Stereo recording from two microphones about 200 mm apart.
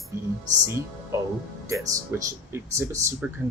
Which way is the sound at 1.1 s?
15° right (ahead or behind).